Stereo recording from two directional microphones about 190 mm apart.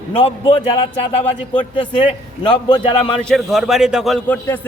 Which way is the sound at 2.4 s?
25° left (ahead or behind).